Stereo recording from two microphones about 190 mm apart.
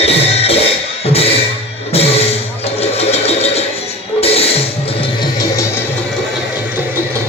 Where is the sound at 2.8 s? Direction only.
35° left (ahead or behind).